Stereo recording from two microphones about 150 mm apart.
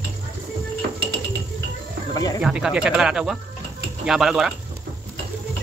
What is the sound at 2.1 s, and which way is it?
Snake, 25° left (ahead or behind).